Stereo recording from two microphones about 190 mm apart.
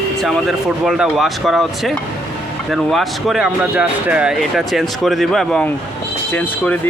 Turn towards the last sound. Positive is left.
turn(degrees=10)  # may be behind; listen again after turning